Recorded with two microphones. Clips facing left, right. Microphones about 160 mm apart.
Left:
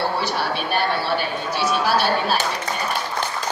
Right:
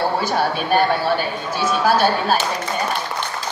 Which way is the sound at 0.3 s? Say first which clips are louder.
Right 5 dB; 45° right (ahead or behind).